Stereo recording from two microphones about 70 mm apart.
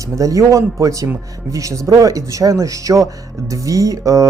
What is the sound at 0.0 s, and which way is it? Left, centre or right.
Speech, right.